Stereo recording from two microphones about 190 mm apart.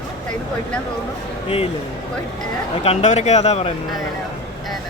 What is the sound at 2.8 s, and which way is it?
Speech, 35° left (ahead or behind).